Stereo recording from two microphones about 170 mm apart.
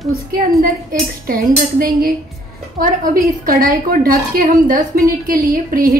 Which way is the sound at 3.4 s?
55° right (ahead or behind).